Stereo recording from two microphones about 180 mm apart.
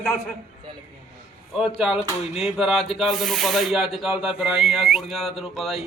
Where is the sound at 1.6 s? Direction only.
Centre (ahead or behind).